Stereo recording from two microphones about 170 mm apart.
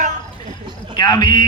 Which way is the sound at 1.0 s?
25° left (ahead or behind).